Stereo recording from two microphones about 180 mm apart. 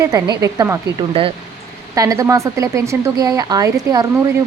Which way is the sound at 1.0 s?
30° right (ahead or behind).